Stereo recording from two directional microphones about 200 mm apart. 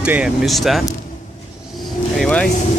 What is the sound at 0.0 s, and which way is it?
Speech, 5° right (ahead or behind).